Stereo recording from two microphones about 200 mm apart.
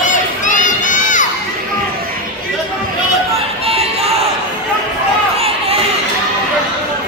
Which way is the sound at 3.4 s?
30° right (ahead or behind).